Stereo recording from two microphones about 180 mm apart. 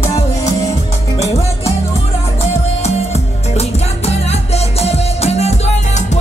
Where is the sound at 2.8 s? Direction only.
35° left (ahead or behind).